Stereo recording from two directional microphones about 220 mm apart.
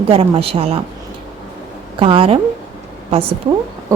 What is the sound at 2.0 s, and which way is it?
Speech, 25° right (ahead or behind).